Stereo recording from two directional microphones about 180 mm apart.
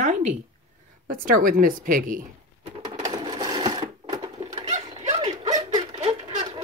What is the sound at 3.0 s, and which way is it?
Sewing machine, 20° right (ahead or behind).